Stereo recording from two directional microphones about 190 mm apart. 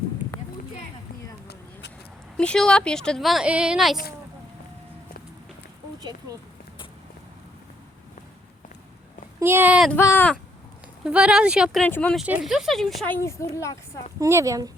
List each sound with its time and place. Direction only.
2.4 s a woman's voice: 5° left (ahead or behind)
9.4 s speech: 10° right (ahead or behind)
9.9 s speech: 10° left (ahead or behind)
11.0 s a woman's voice: 5° right (ahead or behind)
11.9 s speech: 10° left (ahead or behind)
12.2 s a woman's voice: 5° right (ahead or behind)
13.1 s speech: 15° left (ahead or behind)
14.2 s speech: 15° right (ahead or behind)